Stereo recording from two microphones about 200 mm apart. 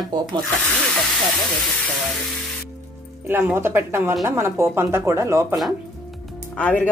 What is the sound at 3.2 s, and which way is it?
Speech, 10° right (ahead or behind).